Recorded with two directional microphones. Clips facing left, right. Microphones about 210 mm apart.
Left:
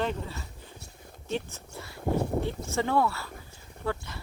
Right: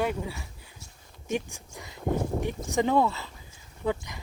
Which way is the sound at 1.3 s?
15° right (ahead or behind).